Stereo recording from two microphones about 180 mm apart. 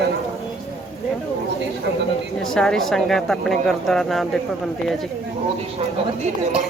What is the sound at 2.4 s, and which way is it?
Speech, centre (ahead or behind).